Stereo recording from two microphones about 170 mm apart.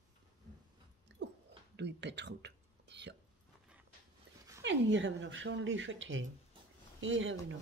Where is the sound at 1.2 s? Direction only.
90° right.